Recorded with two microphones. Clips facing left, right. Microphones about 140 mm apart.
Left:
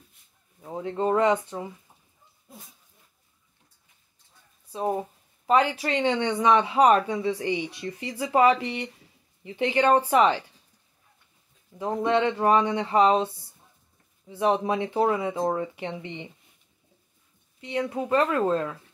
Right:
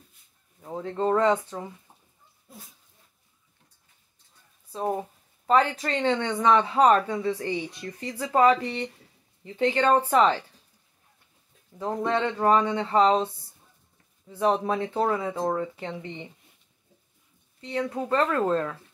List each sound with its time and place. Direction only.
0.6 s a sound: 5° left (ahead or behind)
0.8 s speech: 15° left (ahead or behind)
4.7 s speech: 10° left (ahead or behind)
11.8 s speech: 15° left (ahead or behind)
17.6 s speech: 15° left (ahead or behind)
18.2 s speech: centre (ahead or behind)